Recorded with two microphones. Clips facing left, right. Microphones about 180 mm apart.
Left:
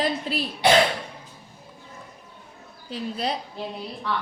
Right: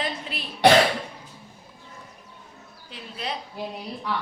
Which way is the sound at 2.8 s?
35° left (ahead or behind).